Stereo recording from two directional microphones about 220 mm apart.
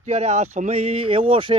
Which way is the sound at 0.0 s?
30° right (ahead or behind).